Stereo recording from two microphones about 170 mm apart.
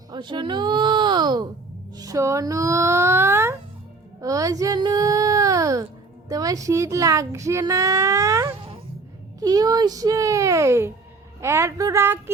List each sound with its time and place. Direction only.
0.1 s a child's voice: 25° right (ahead or behind)